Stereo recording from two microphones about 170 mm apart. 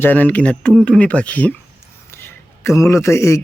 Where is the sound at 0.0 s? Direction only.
10° left (ahead or behind).